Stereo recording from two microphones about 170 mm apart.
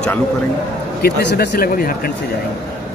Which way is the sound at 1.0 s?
65° left (ahead or behind).